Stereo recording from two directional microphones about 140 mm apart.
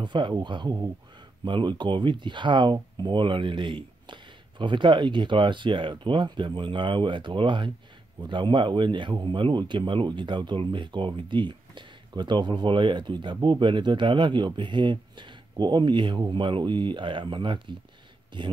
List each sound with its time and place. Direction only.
0.0 s speech: 35° right (ahead or behind)